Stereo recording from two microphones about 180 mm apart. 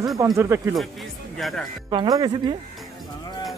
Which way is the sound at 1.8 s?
20° right (ahead or behind).